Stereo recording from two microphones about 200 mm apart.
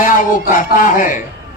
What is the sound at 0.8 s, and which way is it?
Speech, 40° left (ahead or behind).